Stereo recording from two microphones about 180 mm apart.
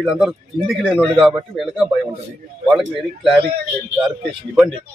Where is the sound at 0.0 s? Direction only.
Centre (ahead or behind).